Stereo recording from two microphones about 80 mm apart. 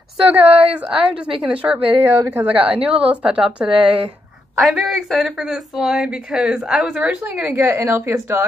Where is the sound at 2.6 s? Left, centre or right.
Centre.